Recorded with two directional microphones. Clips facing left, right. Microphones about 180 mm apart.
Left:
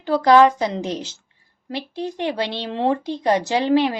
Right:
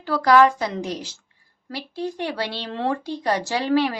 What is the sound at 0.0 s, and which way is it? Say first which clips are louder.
A woman's voice: left 3 dB; 20° left (ahead or behind).